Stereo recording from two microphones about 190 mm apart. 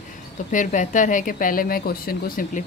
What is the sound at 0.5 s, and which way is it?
Speech, 40° left (ahead or behind).